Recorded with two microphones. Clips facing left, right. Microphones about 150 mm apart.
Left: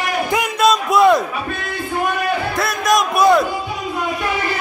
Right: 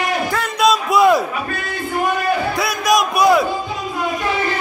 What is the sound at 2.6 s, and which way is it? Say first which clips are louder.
Crowd: even; centre (ahead or behind).